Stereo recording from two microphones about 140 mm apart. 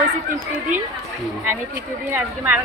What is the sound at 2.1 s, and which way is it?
Speech, 15° right (ahead or behind).